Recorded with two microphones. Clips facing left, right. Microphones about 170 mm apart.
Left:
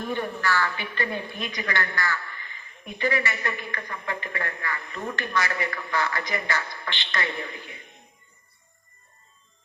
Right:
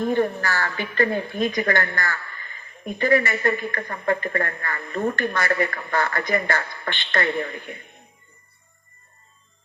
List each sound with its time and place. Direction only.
0.1 s a woman's voice: 45° right (ahead or behind)